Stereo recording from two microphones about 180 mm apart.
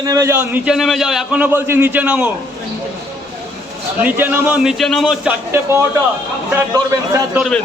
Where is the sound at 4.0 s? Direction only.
10° right (ahead or behind).